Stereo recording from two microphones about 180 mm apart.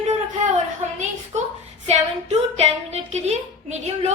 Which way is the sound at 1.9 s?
35° right (ahead or behind).